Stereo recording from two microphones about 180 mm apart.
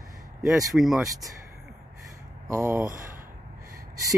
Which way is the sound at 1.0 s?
20° right (ahead or behind).